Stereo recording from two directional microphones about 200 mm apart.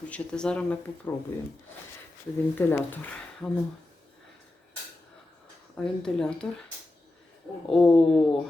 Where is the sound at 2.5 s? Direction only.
10° left (ahead or behind).